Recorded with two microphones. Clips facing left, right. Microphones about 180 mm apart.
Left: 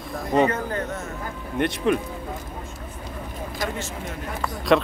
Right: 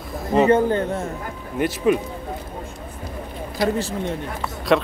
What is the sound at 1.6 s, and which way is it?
Speech, 5° right (ahead or behind).